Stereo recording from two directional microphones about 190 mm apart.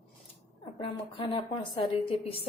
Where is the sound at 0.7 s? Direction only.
25° left (ahead or behind).